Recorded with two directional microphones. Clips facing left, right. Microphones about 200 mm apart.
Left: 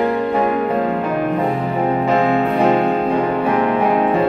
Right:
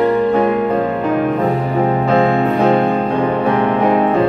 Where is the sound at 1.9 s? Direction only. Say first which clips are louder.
Right 1 dB; 10° left (ahead or behind).